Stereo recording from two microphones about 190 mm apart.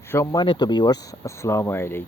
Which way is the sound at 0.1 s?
15° left (ahead or behind).